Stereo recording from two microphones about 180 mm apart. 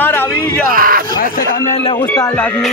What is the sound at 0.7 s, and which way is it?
Speech, 50° right (ahead or behind).